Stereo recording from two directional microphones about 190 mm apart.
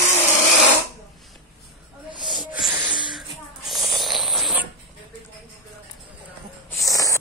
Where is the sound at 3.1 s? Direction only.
Centre (ahead or behind).